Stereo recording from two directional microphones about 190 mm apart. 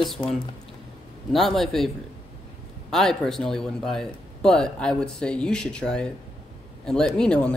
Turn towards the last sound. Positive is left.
turn(degrees=5)  # may be behind; listen again after turning